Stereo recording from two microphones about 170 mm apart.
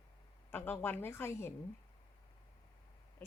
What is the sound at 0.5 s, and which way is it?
A woman's voice, 10° left (ahead or behind).